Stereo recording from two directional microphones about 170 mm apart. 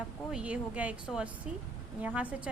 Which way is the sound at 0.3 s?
5° right (ahead or behind).